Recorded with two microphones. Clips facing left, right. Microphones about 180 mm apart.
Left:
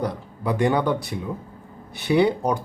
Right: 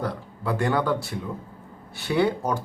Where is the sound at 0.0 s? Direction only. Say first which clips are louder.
Left 3 dB; 20° left (ahead or behind).